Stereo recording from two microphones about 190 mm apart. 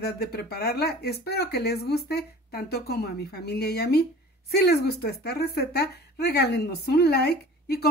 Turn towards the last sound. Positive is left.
turn(degrees=55)  # may be behind; listen again after turning